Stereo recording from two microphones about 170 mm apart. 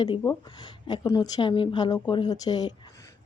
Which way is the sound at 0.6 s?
25° left (ahead or behind).